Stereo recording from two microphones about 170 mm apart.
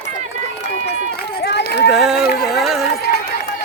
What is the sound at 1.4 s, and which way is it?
Run, 85° left.